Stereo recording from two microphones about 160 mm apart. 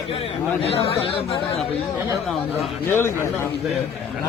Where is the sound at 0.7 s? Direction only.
35° left (ahead or behind).